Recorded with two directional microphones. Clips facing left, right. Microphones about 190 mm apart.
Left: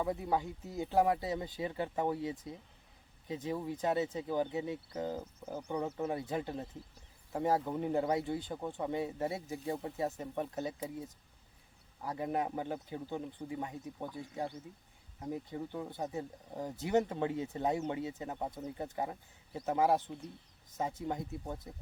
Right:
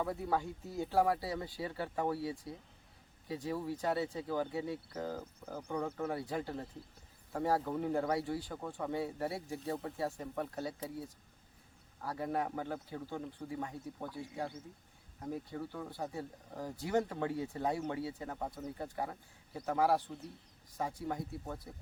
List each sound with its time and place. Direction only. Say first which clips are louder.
0.0 s speech: left 1 dB; 15° left (ahead or behind)